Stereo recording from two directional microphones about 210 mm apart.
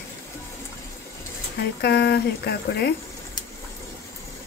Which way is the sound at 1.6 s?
50° left (ahead or behind).